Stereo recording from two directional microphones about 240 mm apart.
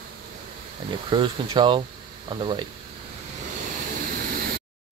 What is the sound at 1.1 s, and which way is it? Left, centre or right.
Speech, centre.